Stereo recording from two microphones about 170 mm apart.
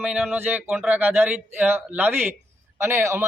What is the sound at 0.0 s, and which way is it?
A man's voice, 5° right (ahead or behind).